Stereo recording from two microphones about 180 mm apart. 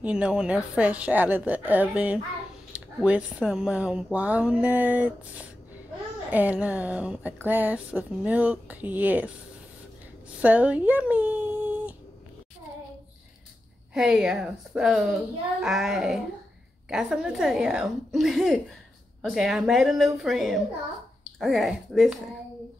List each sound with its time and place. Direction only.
0.0 s speech: 5° right (ahead or behind)
6.3 s speech: 10° right (ahead or behind)
10.4 s speech: 10° right (ahead or behind)
13.9 s speech: 5° right (ahead or behind)